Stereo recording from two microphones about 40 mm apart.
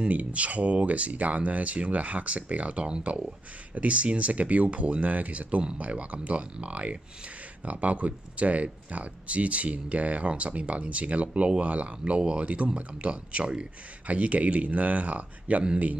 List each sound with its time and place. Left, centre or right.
0.1 s speech: right
14.0 s speech: right